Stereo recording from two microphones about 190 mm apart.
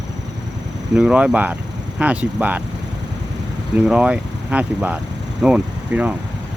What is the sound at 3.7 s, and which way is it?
Speech, 5° right (ahead or behind).